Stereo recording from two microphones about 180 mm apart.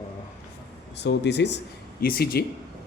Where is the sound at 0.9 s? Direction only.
70° left (ahead or behind).